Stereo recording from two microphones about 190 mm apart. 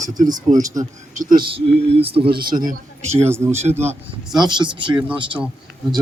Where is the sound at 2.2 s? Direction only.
55° right (ahead or behind).